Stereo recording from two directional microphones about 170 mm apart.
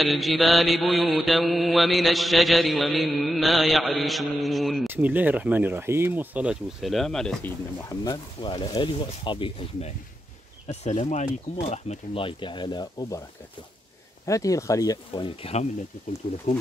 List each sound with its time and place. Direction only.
0.0 s mantra: centre (ahead or behind)
4.8 s speech: 10° right (ahead or behind)
7.9 s speech: 20° left (ahead or behind)
14.2 s speech: 20° left (ahead or behind)